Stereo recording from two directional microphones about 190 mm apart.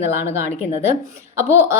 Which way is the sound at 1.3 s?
15° right (ahead or behind).